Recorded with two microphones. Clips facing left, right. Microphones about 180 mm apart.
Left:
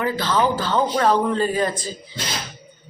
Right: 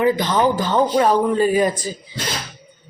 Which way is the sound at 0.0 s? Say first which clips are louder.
Right 4 dB; 15° right (ahead or behind).